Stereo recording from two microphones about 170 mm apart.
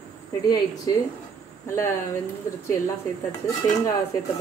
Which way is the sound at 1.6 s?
15° left (ahead or behind).